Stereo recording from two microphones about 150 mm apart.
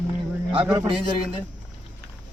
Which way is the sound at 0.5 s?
35° right (ahead or behind).